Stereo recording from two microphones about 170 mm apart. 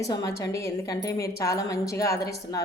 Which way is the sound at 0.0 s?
20° left (ahead or behind).